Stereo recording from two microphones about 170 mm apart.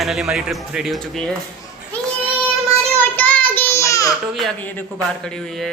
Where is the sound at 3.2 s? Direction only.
10° left (ahead or behind).